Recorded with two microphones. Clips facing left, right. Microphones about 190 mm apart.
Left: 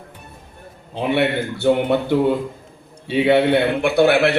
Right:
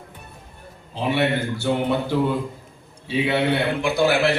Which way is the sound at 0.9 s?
60° left (ahead or behind).